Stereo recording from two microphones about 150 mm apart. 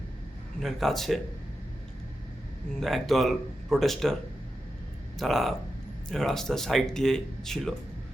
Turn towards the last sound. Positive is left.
turn(degrees=5)  # may be behind; listen again after turning